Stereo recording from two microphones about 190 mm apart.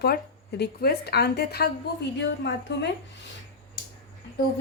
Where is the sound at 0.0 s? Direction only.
60° left (ahead or behind).